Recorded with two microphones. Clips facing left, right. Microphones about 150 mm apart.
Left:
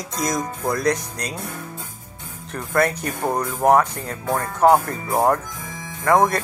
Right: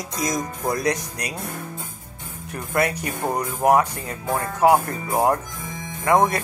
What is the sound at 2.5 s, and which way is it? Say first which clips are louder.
Speech: left 2 dB; 15° right (ahead or behind).